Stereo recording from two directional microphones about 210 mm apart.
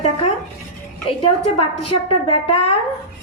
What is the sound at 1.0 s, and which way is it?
A woman's voice, 25° left (ahead or behind).